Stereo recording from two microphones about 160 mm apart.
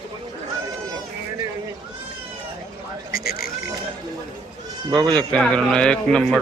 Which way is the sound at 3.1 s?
65° left (ahead or behind).